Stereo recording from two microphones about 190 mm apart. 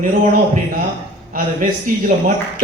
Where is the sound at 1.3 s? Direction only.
45° right (ahead or behind).